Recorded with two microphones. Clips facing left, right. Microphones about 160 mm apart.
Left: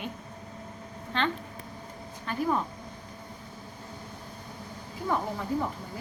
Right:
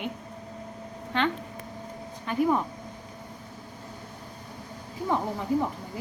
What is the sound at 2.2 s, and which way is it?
Speech, 15° right (ahead or behind).